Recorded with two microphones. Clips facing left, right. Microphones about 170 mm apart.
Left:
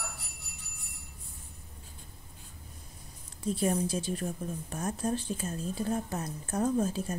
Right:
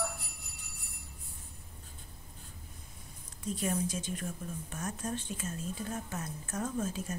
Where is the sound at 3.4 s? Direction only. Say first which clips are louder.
Left 4 dB; 30° left (ahead or behind).